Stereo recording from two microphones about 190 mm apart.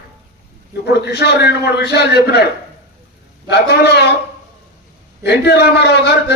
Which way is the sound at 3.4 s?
60° left (ahead or behind).